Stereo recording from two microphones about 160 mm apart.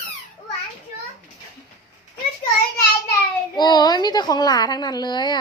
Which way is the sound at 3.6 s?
25° left (ahead or behind).